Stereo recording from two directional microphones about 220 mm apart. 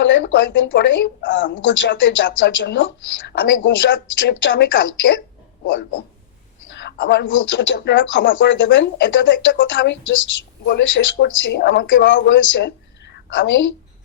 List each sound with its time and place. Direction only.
0.0 s speech: 55° left (ahead or behind)
6.8 s speech: 45° left (ahead or behind)